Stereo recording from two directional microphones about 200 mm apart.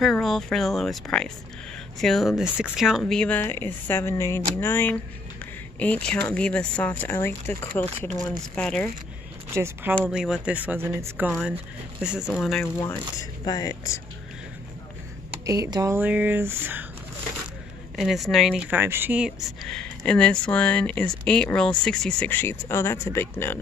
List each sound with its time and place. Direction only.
0.0 s speech: centre (ahead or behind)
9.5 s speech: 15° right (ahead or behind)
9.9 s speech: centre (ahead or behind)
13.2 s speech: 20° left (ahead or behind)
15.3 s speech: 15° right (ahead or behind)
17.9 s speech: centre (ahead or behind)